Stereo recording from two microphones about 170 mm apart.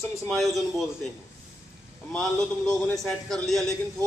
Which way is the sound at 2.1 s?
5° left (ahead or behind).